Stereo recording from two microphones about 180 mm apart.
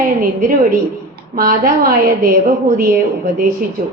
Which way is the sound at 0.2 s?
50° right (ahead or behind).